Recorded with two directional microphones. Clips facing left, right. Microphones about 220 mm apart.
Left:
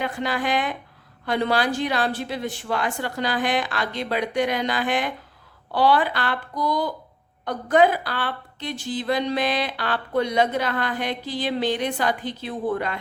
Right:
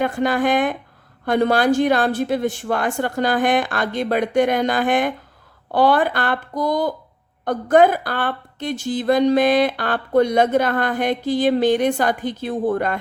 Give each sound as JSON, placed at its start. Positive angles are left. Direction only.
{"t": 0.0, "sound": "a woman's voice", "side_deg": -50}